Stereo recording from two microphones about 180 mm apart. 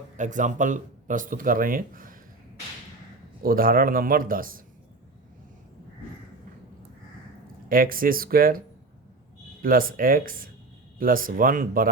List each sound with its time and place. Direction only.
0.2 s speech: 45° right (ahead or behind)
3.4 s speech: 55° right (ahead or behind)
7.7 s speech: 50° right (ahead or behind)